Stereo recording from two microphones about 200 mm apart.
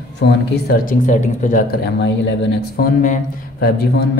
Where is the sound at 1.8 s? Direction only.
60° left (ahead or behind).